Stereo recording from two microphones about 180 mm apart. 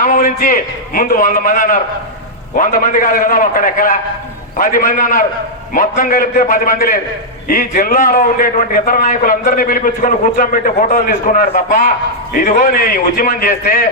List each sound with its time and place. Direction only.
0.0 s a man's voice: 50° left (ahead or behind)